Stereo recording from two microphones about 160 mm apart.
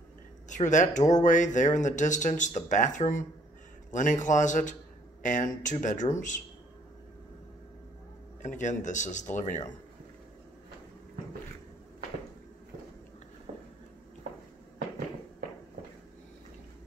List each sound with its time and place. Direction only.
0.5 s speech: 50° left (ahead or behind)
8.4 s speech: 50° left (ahead or behind)
13.5 s a sound: 45° right (ahead or behind)